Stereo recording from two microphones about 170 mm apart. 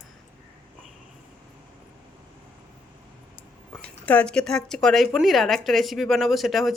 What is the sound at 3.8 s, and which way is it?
A woman's voice, 10° left (ahead or behind).